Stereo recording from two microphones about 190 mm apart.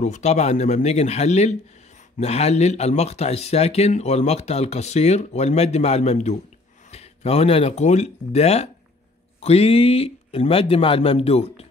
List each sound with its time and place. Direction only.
0.0 s speech: 35° left (ahead or behind)